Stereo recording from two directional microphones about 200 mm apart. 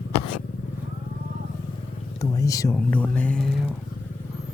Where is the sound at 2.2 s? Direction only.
15° left (ahead or behind).